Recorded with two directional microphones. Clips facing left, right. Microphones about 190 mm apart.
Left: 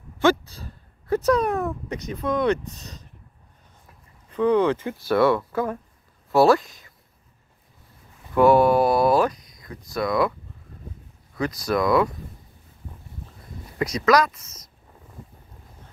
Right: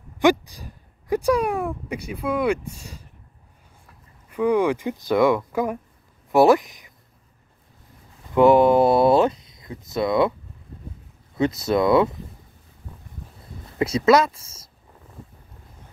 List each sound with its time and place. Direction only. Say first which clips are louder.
0.2 s speech: right 2 dB; 15° right (ahead or behind)
4.3 s speech: even; 10° right (ahead or behind)
8.4 s speech: right 2 dB; 20° right (ahead or behind)
11.3 s speech: right 3 dB; 25° right (ahead or behind)
13.7 s speech: right 3 dB; 25° right (ahead or behind)